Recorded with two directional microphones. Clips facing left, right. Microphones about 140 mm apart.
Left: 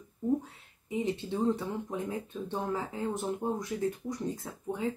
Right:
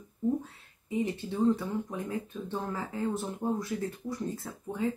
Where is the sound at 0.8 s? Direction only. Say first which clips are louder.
Right 1 dB; 20° left (ahead or behind).